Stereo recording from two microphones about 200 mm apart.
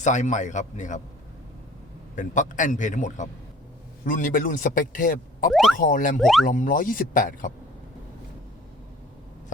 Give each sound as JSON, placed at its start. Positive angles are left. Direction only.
{"t": 0.0, "sound": "a man's voice", "side_deg": 35}
{"t": 2.1, "sound": "a man's voice", "side_deg": 40}
{"t": 5.5, "sound": "speech", "side_deg": 0}
{"t": 5.7, "sound": "speech", "side_deg": 45}
{"t": 6.1, "sound": "speech", "side_deg": 0}
{"t": 6.4, "sound": "speech", "side_deg": 40}